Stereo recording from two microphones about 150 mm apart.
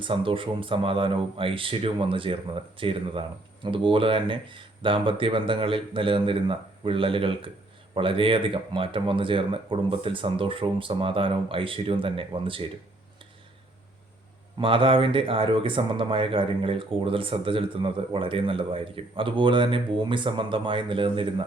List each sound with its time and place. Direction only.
0.0 s speech: 35° right (ahead or behind)
14.6 s speech: 35° right (ahead or behind)